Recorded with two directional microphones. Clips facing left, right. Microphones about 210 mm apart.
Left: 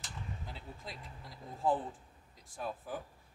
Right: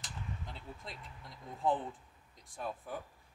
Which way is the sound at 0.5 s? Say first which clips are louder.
Even; centre (ahead or behind).